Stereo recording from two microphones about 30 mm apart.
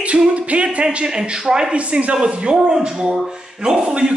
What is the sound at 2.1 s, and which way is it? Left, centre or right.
Speech, right.